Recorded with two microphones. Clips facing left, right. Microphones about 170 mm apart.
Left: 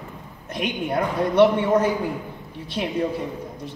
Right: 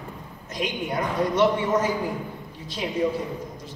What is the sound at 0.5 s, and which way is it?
A man's voice, 60° left (ahead or behind).